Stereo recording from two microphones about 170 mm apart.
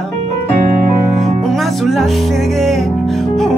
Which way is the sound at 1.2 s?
Centre (ahead or behind).